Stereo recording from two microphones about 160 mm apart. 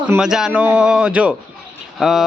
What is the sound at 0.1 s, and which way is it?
A man's voice, 5° right (ahead or behind).